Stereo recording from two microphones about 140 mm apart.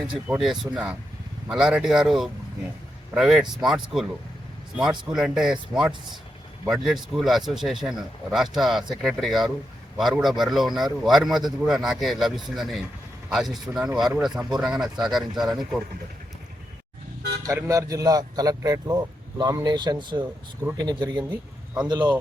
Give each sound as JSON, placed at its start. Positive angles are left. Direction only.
{"t": 0.3, "sound": "speech", "side_deg": 0}
{"t": 17.4, "sound": "a man's voice", "side_deg": -25}